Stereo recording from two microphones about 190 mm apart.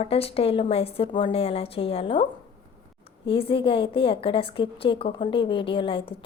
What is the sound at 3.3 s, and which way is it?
A woman's voice, 30° left (ahead or behind).